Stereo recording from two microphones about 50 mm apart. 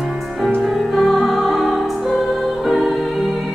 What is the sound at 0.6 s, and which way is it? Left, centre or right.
Music, centre.